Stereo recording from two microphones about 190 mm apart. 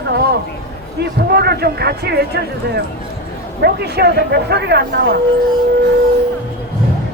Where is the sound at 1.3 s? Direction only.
60° right (ahead or behind).